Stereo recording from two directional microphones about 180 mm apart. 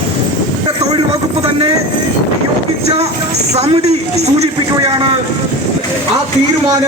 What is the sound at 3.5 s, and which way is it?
Speech, 35° right (ahead or behind).